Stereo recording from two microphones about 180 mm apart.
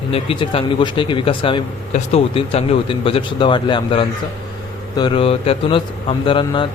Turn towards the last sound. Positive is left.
turn(degrees=30)  # may be behind; listen again after turning